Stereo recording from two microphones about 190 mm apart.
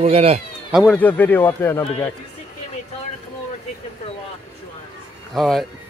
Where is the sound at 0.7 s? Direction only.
5° left (ahead or behind).